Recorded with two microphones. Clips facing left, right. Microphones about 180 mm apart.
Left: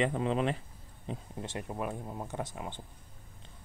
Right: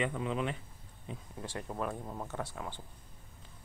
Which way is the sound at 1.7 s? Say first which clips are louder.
Right 1 dB; 10° left (ahead or behind).